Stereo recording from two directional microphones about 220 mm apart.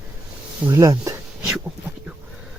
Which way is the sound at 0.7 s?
15° right (ahead or behind).